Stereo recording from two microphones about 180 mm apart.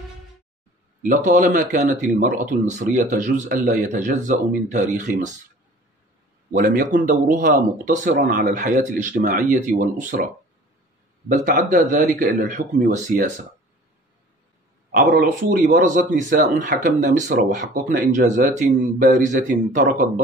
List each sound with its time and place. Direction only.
1.0 s speech: 45° right (ahead or behind)
6.5 s speech: 50° right (ahead or behind)
11.2 s speech: 45° right (ahead or behind)
15.0 s speech: 50° right (ahead or behind)